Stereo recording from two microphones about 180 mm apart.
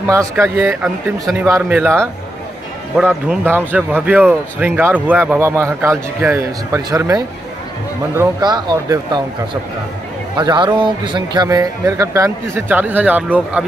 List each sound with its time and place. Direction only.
0.1 s speech: 15° right (ahead or behind)
3.1 s speech: 10° right (ahead or behind)